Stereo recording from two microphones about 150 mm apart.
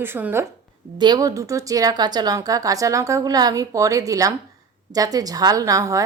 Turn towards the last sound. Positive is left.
turn(degrees=-20)  # may be behind; listen again after turning